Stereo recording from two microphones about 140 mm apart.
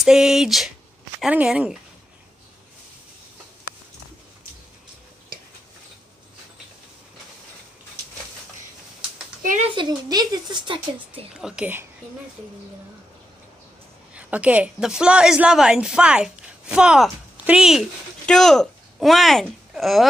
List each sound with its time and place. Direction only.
0.0 s a woman's voice: 5° right (ahead or behind)
9.4 s a sound: 65° right (ahead or behind)
9.8 s a woman's voice: 30° right (ahead or behind)
11.4 s a woman's voice: 10° right (ahead or behind)
14.1 s a woman's voice: 10° right (ahead or behind)